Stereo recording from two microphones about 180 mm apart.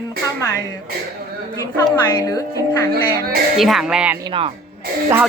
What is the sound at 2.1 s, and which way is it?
Speech, 20° left (ahead or behind).